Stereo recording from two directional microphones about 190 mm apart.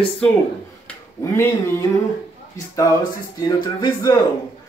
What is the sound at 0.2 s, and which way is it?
A man's voice, 5° left (ahead or behind).